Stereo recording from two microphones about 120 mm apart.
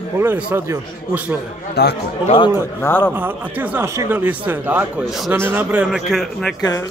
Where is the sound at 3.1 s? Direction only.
15° right (ahead or behind).